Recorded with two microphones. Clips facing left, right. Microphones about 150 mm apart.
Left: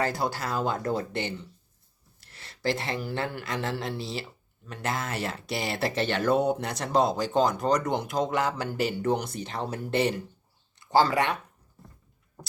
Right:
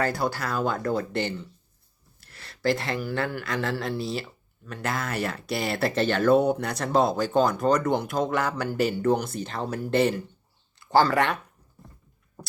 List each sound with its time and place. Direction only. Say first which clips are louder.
0.0 s speech: right 2 dB; 25° left (ahead or behind)